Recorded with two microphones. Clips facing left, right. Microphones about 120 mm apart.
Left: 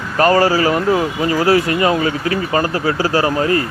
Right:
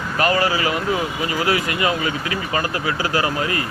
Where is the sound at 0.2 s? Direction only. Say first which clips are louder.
Left 7 dB; 35° left (ahead or behind).